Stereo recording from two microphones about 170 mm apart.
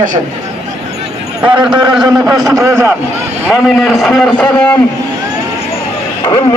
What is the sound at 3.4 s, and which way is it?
A man's voice, 5° right (ahead or behind).